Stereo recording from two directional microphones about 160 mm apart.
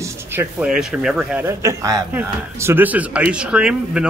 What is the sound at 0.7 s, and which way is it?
Speech, 5° right (ahead or behind).